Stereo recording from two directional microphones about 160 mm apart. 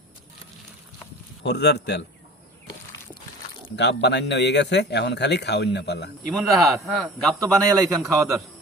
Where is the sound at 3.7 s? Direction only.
90° left.